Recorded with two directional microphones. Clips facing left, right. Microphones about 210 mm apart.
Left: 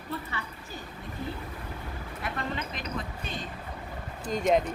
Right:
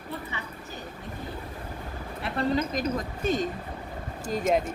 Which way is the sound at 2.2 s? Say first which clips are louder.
Right 8 dB; 35° right (ahead or behind).